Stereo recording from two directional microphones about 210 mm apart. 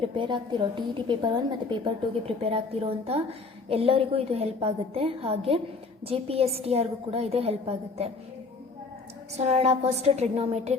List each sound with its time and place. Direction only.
0.2 s a woman's voice: 25° right (ahead or behind)
9.3 s a woman's voice: 30° right (ahead or behind)